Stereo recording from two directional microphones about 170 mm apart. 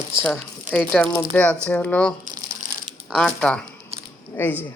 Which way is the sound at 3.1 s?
5° left (ahead or behind).